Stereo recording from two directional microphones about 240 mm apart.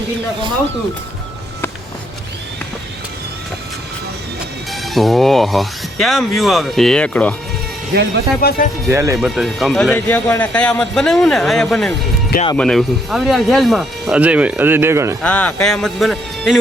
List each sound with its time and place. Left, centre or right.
4.7 s speech: centre
7.9 s speech: right
8.4 s speech: left
8.9 s speech: centre
9.1 s speech: centre
15.2 s speech: centre